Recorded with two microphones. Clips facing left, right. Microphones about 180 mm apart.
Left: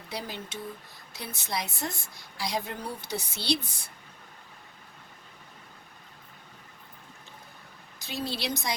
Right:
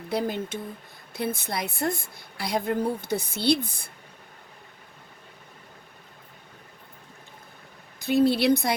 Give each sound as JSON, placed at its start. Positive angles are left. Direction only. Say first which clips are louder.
{"t": 0.1, "sound": "a woman's voice", "louder": "right 10 dB", "side_deg": -50}
{"t": 7.9, "sound": "a woman's voice", "louder": "right 14 dB", "side_deg": -55}